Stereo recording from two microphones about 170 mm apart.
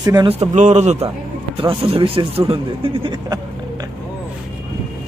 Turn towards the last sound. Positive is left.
turn(degrees=-30)  # may be behind; listen again after turning